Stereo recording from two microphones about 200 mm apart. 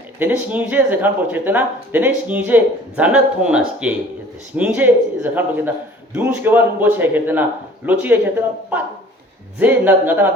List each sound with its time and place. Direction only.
0.2 s speech: 10° right (ahead or behind)
9.6 s speech: 10° right (ahead or behind)